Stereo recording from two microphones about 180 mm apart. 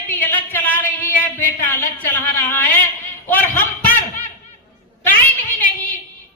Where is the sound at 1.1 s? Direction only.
10° left (ahead or behind).